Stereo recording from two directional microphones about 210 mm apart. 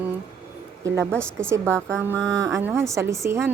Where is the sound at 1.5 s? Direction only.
10° right (ahead or behind).